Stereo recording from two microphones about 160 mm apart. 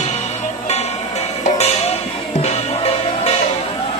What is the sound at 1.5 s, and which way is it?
Music, 40° left (ahead or behind).